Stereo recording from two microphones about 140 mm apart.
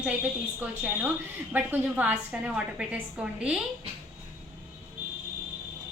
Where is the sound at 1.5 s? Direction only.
10° right (ahead or behind).